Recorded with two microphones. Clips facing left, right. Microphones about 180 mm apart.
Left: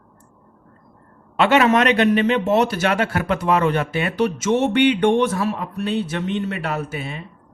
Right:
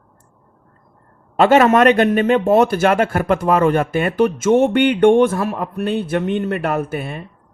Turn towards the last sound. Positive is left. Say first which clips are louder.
# right 5 dB
turn(degrees=-55)  # may be behind; listen again after turning